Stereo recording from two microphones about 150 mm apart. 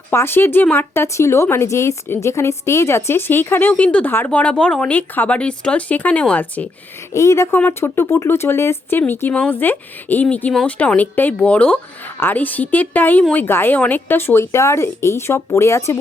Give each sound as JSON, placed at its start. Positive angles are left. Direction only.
{"t": 0.1, "sound": "a woman's voice", "side_deg": 15}